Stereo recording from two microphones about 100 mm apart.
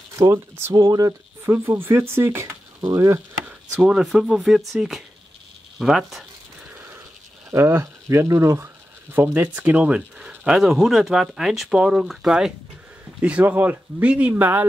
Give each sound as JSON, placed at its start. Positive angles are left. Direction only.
{"t": 0.1, "sound": "speech", "side_deg": -30}
{"t": 0.7, "sound": "speech", "side_deg": -40}
{"t": 1.4, "sound": "speech", "side_deg": -25}
{"t": 3.4, "sound": "speech", "side_deg": -10}
{"t": 7.5, "sound": "speech", "side_deg": -25}